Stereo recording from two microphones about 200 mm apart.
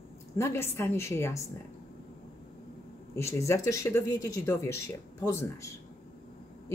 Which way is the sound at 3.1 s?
15° left (ahead or behind).